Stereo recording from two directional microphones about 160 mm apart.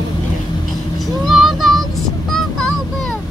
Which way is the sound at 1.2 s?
Centre (ahead or behind).